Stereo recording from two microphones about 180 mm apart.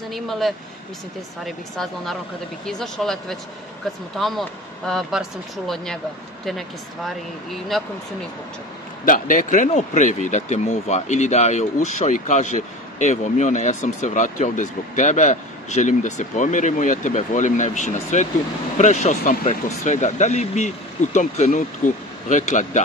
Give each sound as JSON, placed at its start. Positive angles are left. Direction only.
{"t": 0.1, "sound": "a man's voice", "side_deg": 0}
{"t": 7.7, "sound": "a man's voice", "side_deg": 0}
{"t": 9.0, "sound": "speech", "side_deg": 45}